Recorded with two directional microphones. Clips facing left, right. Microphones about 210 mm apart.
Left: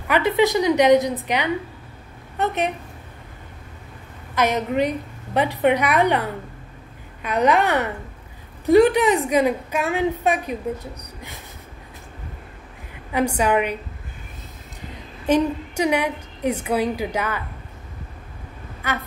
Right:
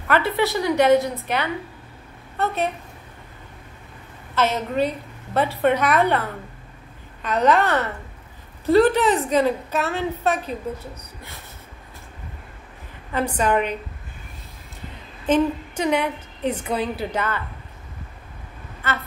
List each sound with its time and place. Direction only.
0.1 s a woman's voice: 15° left (ahead or behind)
4.4 s a woman's voice: 15° left (ahead or behind)
13.1 s a woman's voice: 10° left (ahead or behind)
15.2 s a woman's voice: 10° left (ahead or behind)